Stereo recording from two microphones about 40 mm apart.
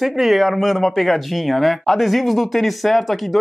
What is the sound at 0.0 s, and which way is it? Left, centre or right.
Speech, centre.